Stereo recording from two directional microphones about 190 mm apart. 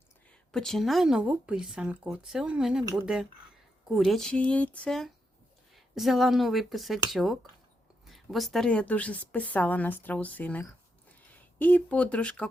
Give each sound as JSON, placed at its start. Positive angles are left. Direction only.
{"t": 0.5, "sound": "a woman's voice", "side_deg": 0}